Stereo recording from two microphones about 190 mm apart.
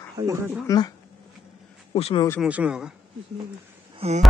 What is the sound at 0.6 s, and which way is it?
Speech, 20° left (ahead or behind).